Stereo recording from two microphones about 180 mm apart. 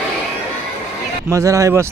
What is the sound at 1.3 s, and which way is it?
Speech, 15° right (ahead or behind).